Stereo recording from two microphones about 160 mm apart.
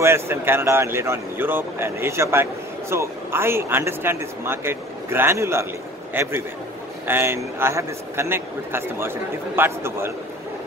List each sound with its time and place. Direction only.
0.0 s a man's voice: 15° right (ahead or behind)